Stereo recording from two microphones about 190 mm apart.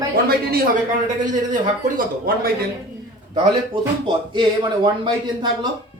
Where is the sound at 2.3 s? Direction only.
50° right (ahead or behind).